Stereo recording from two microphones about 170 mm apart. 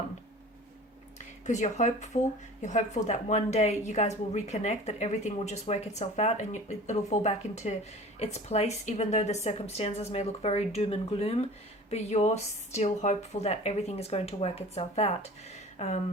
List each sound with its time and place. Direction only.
1.2 s speech: 45° left (ahead or behind)